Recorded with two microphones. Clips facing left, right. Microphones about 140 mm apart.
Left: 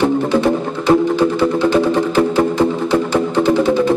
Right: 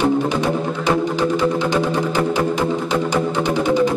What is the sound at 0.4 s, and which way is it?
Music, 15° right (ahead or behind).